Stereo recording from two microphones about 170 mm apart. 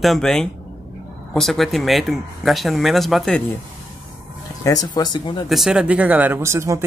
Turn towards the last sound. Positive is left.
turn(degrees=-15)  # may be behind; listen again after turning